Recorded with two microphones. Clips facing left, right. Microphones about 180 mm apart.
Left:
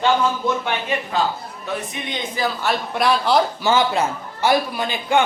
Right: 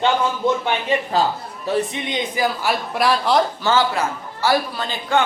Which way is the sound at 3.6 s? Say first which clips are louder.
Left 1 dB; 15° left (ahead or behind).